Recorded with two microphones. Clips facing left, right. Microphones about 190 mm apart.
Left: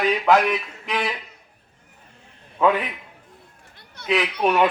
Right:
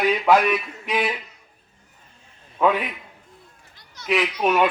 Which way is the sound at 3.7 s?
60° left (ahead or behind).